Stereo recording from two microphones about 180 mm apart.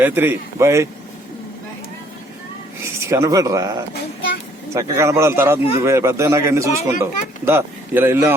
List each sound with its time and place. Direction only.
0.0 s a man's voice: 10° right (ahead or behind)
2.8 s a man's voice: 15° right (ahead or behind)